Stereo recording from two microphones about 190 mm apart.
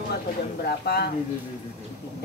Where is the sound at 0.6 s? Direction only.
55° left (ahead or behind).